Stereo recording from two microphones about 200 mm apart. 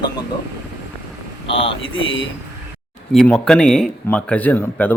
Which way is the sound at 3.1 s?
5° left (ahead or behind).